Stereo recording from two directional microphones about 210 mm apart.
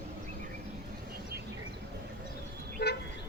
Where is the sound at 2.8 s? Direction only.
55° left (ahead or behind).